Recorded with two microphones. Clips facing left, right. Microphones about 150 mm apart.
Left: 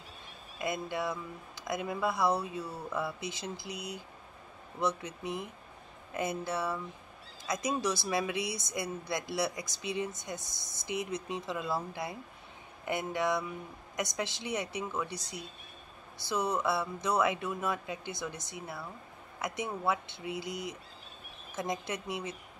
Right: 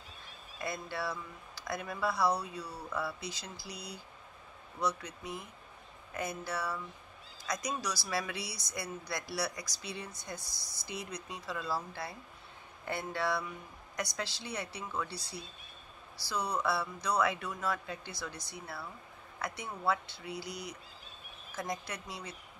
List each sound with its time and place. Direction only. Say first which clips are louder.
0.6 s speech: left 4 dB; 20° left (ahead or behind)